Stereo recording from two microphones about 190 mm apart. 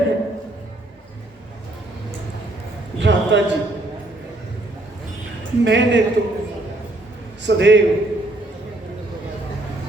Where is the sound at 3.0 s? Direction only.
70° right (ahead or behind).